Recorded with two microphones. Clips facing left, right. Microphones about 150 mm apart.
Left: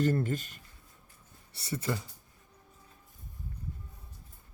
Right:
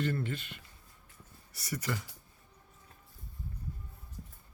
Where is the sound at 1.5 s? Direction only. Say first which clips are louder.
Left 3 dB; 25° left (ahead or behind).